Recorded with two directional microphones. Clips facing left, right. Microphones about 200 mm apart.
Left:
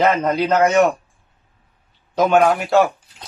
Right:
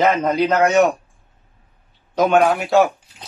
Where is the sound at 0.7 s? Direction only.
5° right (ahead or behind).